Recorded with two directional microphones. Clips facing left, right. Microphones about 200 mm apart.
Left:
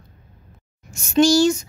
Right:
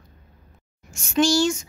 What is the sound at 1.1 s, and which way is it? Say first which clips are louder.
Speech: left 5 dB; 40° left (ahead or behind).